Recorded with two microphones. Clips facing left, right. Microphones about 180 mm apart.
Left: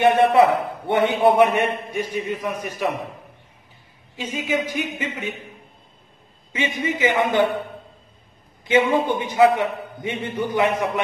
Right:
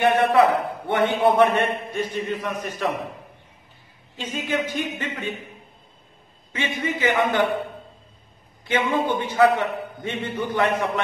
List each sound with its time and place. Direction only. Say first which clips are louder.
0.0 s a man's voice: left 2 dB; 20° left (ahead or behind)
4.2 s a man's voice: left 2 dB; 10° left (ahead or behind)
6.5 s a man's voice: left 2 dB; 15° left (ahead or behind)
8.6 s a man's voice: left 4 dB; 15° left (ahead or behind)